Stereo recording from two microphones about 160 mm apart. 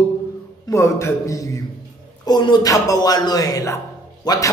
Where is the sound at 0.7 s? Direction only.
20° left (ahead or behind).